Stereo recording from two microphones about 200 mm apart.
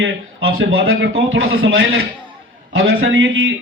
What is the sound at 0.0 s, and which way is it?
A man's voice, 70° right (ahead or behind).